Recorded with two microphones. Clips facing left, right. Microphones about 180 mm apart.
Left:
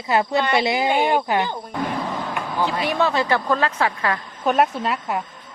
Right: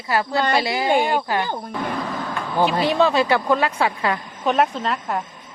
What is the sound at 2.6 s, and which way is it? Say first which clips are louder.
Speech: right 4 dB; 30° right (ahead or behind).